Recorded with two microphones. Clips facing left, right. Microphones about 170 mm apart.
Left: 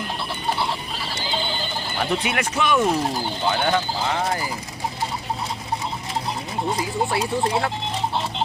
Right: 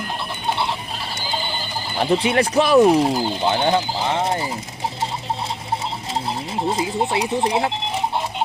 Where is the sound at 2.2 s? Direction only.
30° right (ahead or behind).